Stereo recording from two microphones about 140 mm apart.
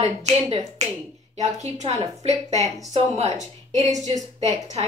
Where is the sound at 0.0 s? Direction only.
50° right (ahead or behind).